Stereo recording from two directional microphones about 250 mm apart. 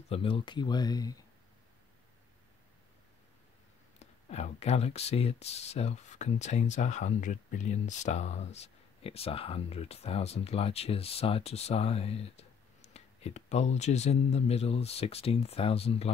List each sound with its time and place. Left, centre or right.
0.1 s speech: left
4.0 s speech: left